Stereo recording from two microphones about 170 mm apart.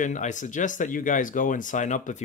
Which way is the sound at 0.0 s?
45° left (ahead or behind).